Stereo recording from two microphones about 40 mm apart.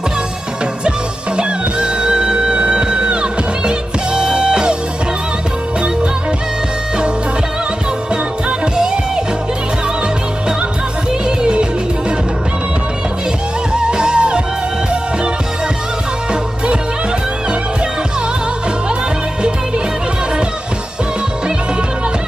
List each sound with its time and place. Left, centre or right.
0.8 s music: right
8.1 s music: centre
11.2 s music: centre
13.7 s music: right